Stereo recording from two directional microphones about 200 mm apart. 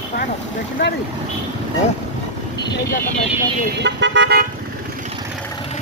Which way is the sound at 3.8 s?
65° right (ahead or behind).